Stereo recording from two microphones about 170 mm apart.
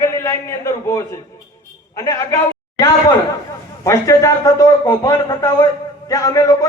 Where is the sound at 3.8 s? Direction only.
15° left (ahead or behind).